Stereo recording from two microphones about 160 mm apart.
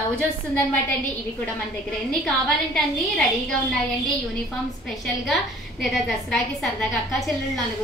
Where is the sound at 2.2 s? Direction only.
5° left (ahead or behind).